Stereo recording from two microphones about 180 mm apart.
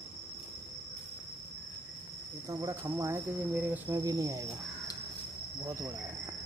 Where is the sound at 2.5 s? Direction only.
15° right (ahead or behind).